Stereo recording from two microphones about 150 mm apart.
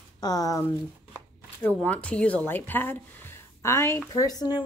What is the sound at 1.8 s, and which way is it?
A woman's voice, 10° left (ahead or behind).